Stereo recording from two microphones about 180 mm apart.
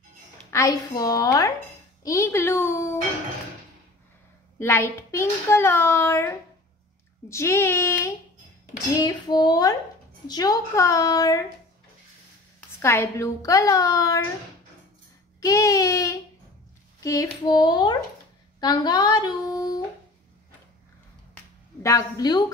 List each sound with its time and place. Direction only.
0.5 s a woman's voice: 20° left (ahead or behind)
4.6 s a child's voice: 15° left (ahead or behind)
12.5 s a child's voice: 15° left (ahead or behind)
15.4 s a child's voice: 20° left (ahead or behind)
21.8 s a woman's voice: 20° left (ahead or behind)